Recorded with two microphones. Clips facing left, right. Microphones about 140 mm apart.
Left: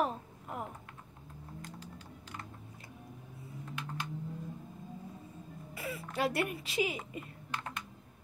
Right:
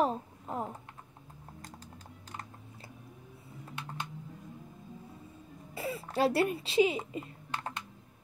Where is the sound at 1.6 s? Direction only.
40° right (ahead or behind).